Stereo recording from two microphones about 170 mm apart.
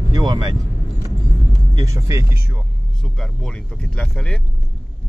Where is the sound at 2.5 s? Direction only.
Centre (ahead or behind).